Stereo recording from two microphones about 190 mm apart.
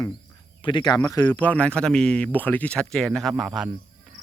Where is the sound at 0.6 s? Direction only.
25° left (ahead or behind); by 3.7 s centre (ahead or behind).